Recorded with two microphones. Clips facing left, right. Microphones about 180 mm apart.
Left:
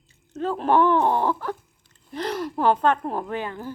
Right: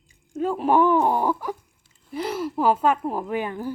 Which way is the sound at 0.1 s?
10° right (ahead or behind).